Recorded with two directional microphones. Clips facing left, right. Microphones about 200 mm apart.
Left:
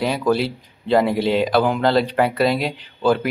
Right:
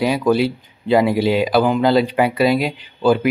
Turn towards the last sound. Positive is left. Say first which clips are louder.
# right 2 dB
turn(degrees=-5)  # may be behind; listen again after turning